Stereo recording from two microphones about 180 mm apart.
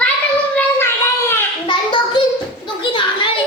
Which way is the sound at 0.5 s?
15° left (ahead or behind).